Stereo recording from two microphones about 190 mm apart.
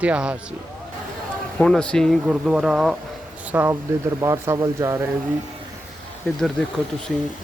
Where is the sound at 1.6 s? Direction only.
5° left (ahead or behind); by 5.1 s 15° right (ahead or behind).